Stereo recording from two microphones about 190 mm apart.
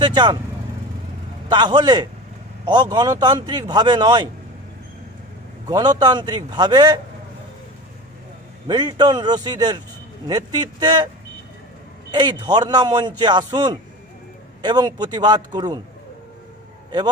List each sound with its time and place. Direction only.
0.0 s a man's voice: 20° right (ahead or behind)
1.5 s a man's voice: 25° right (ahead or behind)
5.7 s a man's voice: 20° right (ahead or behind)
8.6 s a man's voice: 20° right (ahead or behind)
12.1 s a man's voice: 20° right (ahead or behind)